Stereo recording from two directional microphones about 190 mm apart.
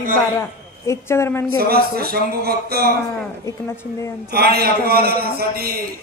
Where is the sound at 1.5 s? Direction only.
55° right (ahead or behind).